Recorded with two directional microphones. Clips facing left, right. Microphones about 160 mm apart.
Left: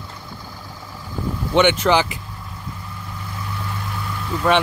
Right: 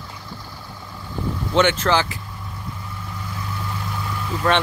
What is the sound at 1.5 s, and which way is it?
Speech, 10° left (ahead or behind).